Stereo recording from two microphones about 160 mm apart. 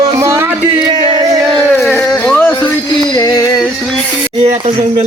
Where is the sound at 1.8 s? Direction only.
10° left (ahead or behind).